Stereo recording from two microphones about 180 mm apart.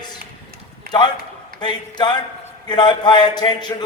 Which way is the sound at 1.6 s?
25° left (ahead or behind).